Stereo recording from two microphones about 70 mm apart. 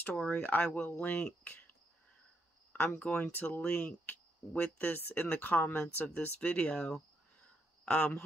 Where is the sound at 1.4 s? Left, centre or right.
Left.